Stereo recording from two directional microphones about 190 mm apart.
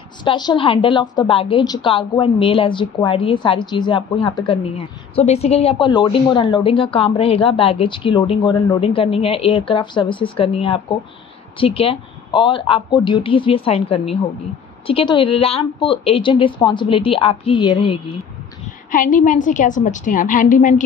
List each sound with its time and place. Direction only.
0.2 s speech: 25° left (ahead or behind)
18.9 s a woman's voice: 45° left (ahead or behind)